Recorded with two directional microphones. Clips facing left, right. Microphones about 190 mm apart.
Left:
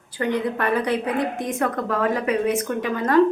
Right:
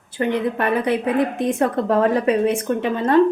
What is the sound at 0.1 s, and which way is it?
A woman's voice, 20° right (ahead or behind).